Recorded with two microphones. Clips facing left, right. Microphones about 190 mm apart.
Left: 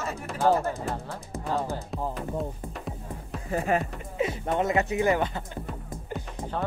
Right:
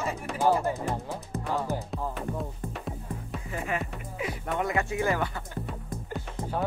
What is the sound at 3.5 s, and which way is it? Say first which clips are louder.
Speech: left 7 dB; 40° left (ahead or behind).